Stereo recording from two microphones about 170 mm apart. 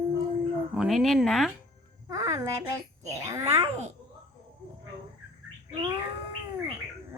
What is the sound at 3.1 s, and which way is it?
Speech, 20° right (ahead or behind).